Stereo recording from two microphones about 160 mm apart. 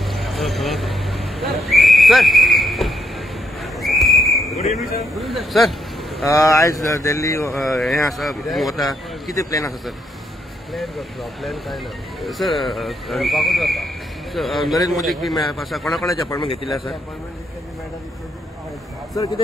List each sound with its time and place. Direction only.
0.0 s a sound: centre (ahead or behind)
4.7 s speech: centre (ahead or behind)
6.2 s speech: 20° left (ahead or behind)
7.5 s speech: centre (ahead or behind)
9.4 s speech: 20° left (ahead or behind)
10.7 s speech: centre (ahead or behind)
16.1 s speech: 20° left (ahead or behind)
19.1 s speech: 30° left (ahead or behind)